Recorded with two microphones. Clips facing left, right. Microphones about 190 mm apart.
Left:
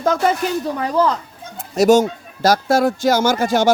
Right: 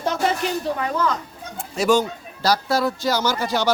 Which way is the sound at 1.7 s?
40° left (ahead or behind).